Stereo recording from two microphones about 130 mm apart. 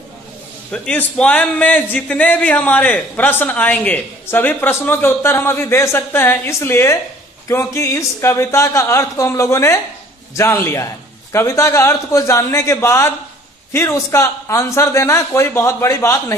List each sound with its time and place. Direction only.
0.7 s a man's voice: 10° left (ahead or behind)